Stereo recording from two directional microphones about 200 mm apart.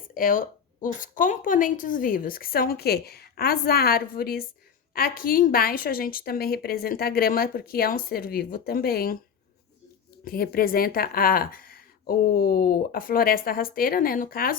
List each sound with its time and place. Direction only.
0.1 s a woman's voice: 45° left (ahead or behind)
10.2 s a woman's voice: 50° left (ahead or behind)